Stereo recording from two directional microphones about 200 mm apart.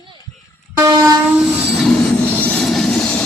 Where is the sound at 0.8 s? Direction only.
15° right (ahead or behind).